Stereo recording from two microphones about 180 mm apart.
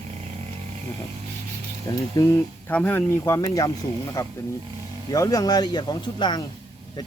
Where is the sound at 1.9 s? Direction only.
15° left (ahead or behind).